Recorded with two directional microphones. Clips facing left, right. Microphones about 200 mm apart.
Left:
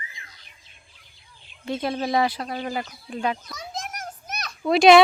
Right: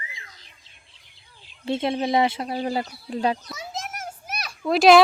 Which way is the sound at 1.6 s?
25° right (ahead or behind).